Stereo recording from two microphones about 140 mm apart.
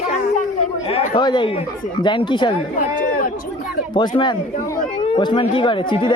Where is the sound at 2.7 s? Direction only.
75° left (ahead or behind).